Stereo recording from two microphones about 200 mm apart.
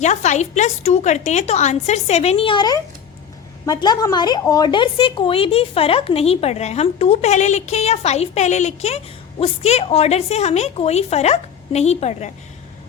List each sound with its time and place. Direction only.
0.0 s a woman's voice: 35° left (ahead or behind)